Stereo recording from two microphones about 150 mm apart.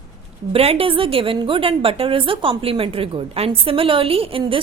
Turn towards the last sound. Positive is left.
turn(degrees=-35)  # may be behind; listen again after turning